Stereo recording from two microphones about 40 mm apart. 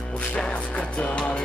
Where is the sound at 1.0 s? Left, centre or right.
Left.